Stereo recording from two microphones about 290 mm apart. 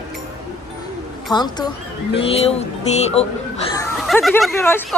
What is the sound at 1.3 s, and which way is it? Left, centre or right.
A woman's voice, centre.